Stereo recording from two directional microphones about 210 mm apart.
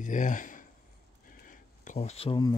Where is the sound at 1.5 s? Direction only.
35° left (ahead or behind).